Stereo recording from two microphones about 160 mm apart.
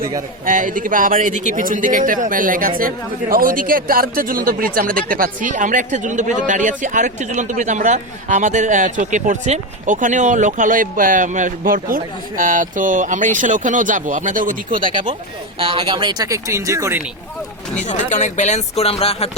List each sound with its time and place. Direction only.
0.4 s speech: 55° right (ahead or behind)
15.5 s speech: 30° right (ahead or behind)
17.8 s speech: 50° left (ahead or behind)